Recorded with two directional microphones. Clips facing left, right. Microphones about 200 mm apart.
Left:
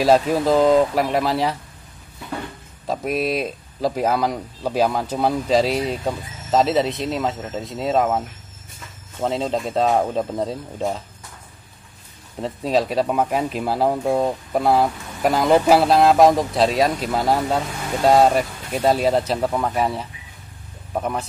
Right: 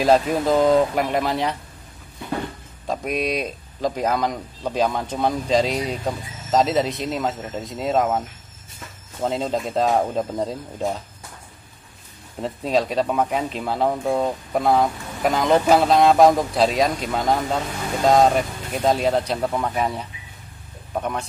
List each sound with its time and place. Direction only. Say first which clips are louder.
0.0 s speech: left 1 dB; centre (ahead or behind)
2.9 s speech: left 2 dB; centre (ahead or behind)
12.4 s speech: left 1 dB; centre (ahead or behind)